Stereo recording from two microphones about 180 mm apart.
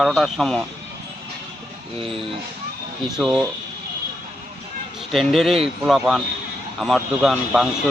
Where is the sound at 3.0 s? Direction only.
5° right (ahead or behind).